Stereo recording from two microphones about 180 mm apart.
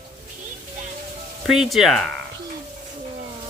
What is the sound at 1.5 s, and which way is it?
Speech, centre (ahead or behind).